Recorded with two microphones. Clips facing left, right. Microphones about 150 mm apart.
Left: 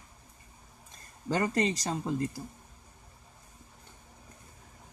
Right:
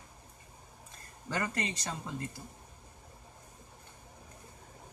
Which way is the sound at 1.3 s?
30° left (ahead or behind).